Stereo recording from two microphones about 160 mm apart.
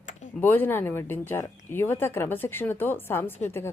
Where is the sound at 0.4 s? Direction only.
15° left (ahead or behind).